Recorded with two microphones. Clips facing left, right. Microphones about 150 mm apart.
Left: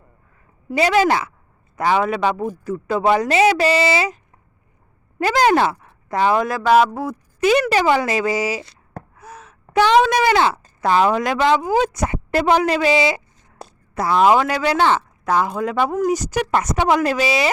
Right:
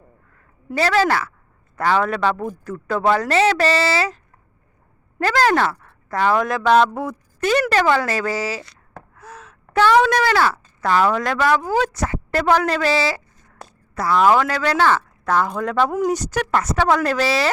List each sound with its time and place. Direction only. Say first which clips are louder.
0.8 s speech: left 2 dB; 15° left (ahead or behind)
5.2 s a woman's voice: left 2 dB; 15° left (ahead or behind)